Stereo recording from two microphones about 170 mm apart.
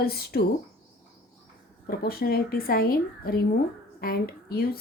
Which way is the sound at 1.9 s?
65° left (ahead or behind).